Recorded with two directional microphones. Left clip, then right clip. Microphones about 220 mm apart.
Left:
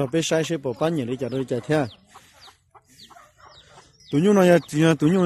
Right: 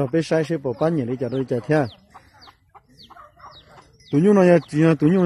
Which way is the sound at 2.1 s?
45° right (ahead or behind).